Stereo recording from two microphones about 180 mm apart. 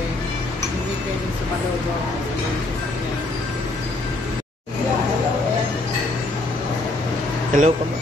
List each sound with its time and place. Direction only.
7.5 s speech: 45° right (ahead or behind)